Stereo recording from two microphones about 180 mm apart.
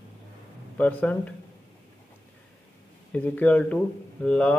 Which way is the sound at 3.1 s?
10° left (ahead or behind).